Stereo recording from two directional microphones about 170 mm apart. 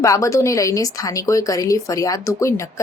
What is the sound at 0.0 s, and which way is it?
A woman's voice, 20° left (ahead or behind).